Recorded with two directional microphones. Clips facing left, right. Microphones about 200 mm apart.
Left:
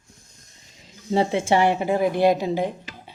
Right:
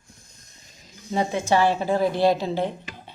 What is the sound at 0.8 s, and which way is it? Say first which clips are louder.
A woman's voice: left 4 dB; 30° left (ahead or behind).